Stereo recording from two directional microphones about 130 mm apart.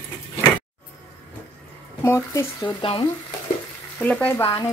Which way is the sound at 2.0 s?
20° left (ahead or behind).